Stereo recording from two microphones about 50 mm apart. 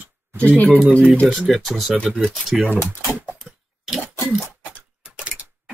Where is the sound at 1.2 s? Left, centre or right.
Centre.